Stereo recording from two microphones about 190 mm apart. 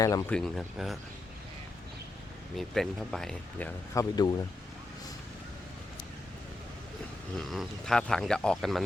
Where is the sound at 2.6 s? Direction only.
Centre (ahead or behind).